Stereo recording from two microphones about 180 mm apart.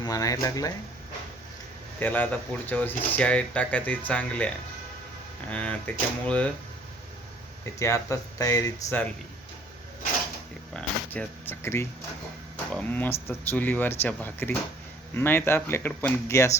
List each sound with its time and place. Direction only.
0.0 s speech: 20° left (ahead or behind)
2.0 s speech: 10° left (ahead or behind)
7.6 s speech: 15° left (ahead or behind)
10.8 s speech: 5° left (ahead or behind)